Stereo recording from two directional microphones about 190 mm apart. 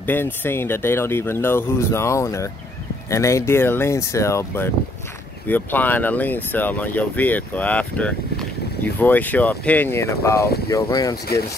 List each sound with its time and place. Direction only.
0.0 s speech: 10° left (ahead or behind)